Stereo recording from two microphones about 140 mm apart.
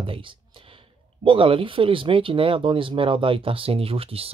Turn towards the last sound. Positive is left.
turn(degrees=-45)  # may be behind; listen again after turning